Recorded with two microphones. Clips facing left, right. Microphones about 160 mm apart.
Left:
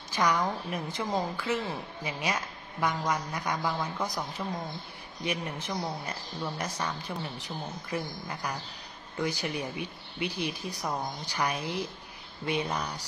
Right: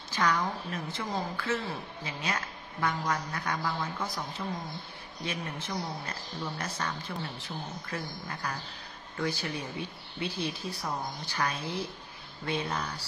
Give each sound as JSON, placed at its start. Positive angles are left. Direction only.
{"t": 0.1, "sound": "a woman's voice", "side_deg": 15}